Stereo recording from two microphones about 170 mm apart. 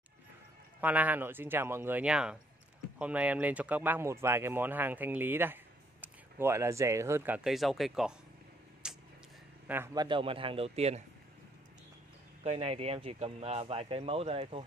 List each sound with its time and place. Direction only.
0.7 s speech: 10° right (ahead or behind)
8.8 s a sound: 5° right (ahead or behind)
9.9 s speech: 30° right (ahead or behind)
12.4 s speech: 35° right (ahead or behind)